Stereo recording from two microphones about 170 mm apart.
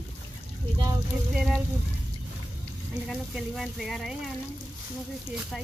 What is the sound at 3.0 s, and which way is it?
Speech, centre (ahead or behind).